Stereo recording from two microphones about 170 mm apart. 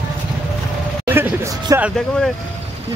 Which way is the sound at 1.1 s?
15° right (ahead or behind).